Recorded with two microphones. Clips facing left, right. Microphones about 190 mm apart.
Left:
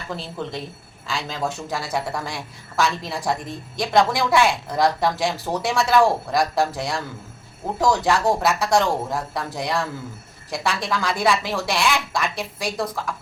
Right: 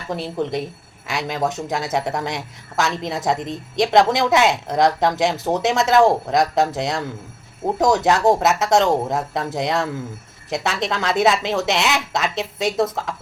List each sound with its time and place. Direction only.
1.0 s a woman's voice: 20° right (ahead or behind)